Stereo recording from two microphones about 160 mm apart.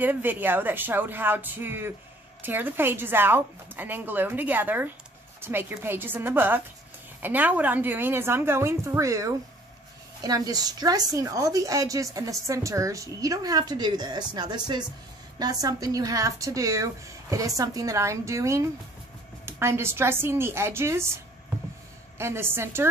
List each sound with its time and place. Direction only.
0.0 s a woman's voice: 10° right (ahead or behind)
22.2 s a woman's voice: 15° right (ahead or behind)